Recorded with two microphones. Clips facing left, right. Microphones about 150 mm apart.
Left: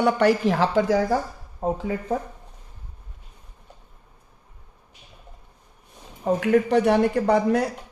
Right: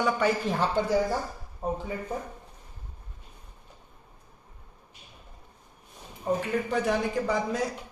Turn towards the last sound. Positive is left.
turn(degrees=65)  # may be behind; listen again after turning